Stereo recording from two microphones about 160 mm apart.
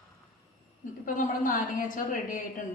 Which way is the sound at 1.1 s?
60° left (ahead or behind).